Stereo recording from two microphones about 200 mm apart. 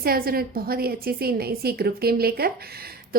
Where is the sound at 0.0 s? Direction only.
50° right (ahead or behind).